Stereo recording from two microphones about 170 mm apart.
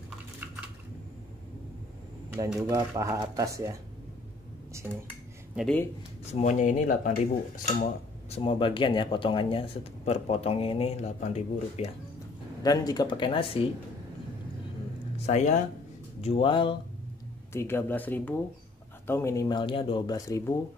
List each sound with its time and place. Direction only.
2.4 s speech: 20° right (ahead or behind)
5.6 s speech: 5° left (ahead or behind)
6.3 s speech: 45° left (ahead or behind)
8.4 s speech: 30° left (ahead or behind)
12.6 s speech: 20° left (ahead or behind)
15.2 s speech: 45° left (ahead or behind)
17.5 s speech: 15° left (ahead or behind)